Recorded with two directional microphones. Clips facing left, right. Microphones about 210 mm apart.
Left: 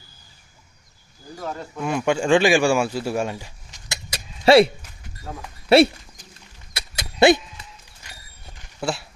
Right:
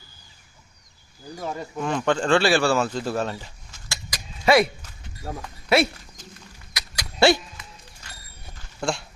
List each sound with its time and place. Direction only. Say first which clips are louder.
1.5 s speech: even; 10° right (ahead or behind)
1.8 s speech: left 1 dB; 10° left (ahead or behind); by 5.9 s 30° left (ahead or behind)
6.7 s dog: left 3 dB; 25° left (ahead or behind)
8.8 s speech: left 1 dB; 5° left (ahead or behind)